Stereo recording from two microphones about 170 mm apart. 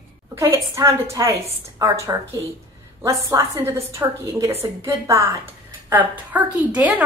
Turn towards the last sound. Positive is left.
turn(degrees=-10)  # may be behind; listen again after turning